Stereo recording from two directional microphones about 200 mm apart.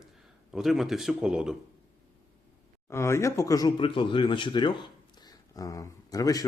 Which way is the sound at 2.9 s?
15° left (ahead or behind).